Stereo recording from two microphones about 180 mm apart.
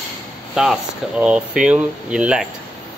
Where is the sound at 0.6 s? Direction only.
5° right (ahead or behind).